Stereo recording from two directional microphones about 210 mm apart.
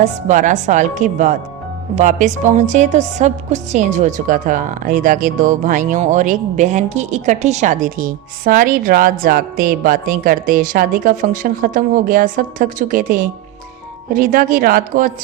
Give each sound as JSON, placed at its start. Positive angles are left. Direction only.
{"t": 0.0, "sound": "a woman's voice", "side_deg": -35}